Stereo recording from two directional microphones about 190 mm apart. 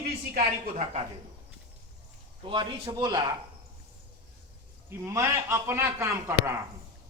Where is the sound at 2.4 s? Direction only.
25° right (ahead or behind).